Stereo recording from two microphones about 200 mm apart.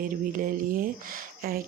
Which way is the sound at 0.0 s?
45° right (ahead or behind).